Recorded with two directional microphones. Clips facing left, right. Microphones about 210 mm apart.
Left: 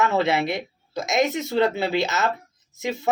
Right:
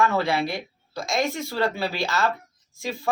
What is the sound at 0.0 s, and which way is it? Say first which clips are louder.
Speech: left 1 dB; 20° left (ahead or behind).